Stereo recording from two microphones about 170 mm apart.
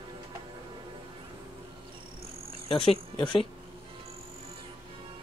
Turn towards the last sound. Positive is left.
turn(degrees=30)  # may be behind; listen again after turning